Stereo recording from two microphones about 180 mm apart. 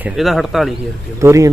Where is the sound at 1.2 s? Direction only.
15° right (ahead or behind).